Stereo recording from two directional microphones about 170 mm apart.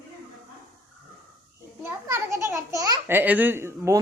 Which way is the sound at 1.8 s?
15° right (ahead or behind).